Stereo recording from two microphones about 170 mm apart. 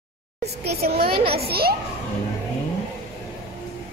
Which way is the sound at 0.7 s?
65° right (ahead or behind).